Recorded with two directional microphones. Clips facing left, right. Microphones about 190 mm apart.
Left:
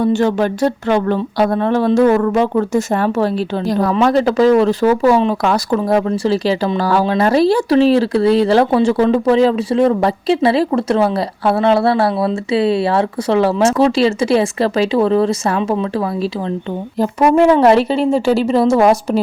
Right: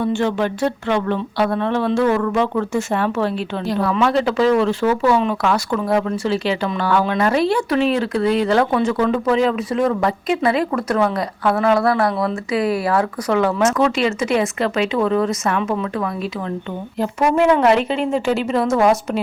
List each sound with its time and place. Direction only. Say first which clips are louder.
0.0 s speech: left 5 dB; 40° left (ahead or behind)